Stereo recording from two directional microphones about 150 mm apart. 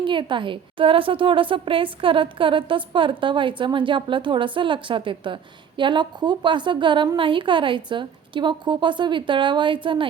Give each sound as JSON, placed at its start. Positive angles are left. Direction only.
{"t": 0.0, "sound": "a woman's voice", "side_deg": -35}